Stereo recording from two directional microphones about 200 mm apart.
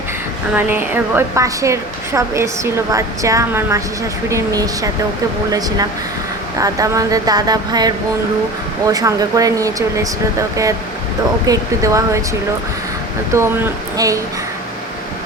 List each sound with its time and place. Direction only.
0.5 s a woman's voice: 10° right (ahead or behind)
11.4 s a woman's voice: 15° right (ahead or behind)
13.3 s a woman's voice: 15° right (ahead or behind)